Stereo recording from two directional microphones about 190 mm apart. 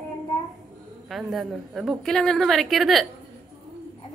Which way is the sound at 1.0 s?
Centre (ahead or behind).